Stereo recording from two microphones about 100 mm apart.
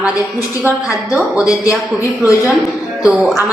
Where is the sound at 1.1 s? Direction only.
15° right (ahead or behind).